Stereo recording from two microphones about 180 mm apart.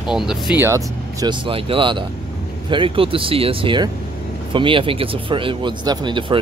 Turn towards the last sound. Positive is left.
turn(degrees=-25)  # may be behind; listen again after turning